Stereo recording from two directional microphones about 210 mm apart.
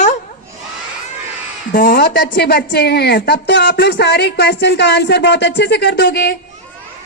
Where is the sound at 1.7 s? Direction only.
40° left (ahead or behind).